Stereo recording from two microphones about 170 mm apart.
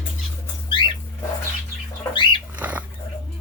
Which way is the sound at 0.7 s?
30° left (ahead or behind).